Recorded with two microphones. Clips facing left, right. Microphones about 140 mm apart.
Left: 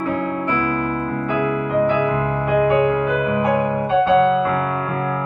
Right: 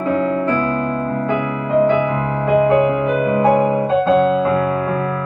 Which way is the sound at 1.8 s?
25° right (ahead or behind).